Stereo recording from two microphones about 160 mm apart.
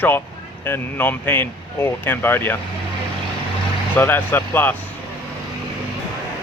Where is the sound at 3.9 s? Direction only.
15° left (ahead or behind).